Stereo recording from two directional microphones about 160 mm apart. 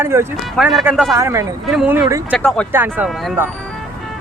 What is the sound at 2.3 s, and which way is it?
Speech, 5° left (ahead or behind).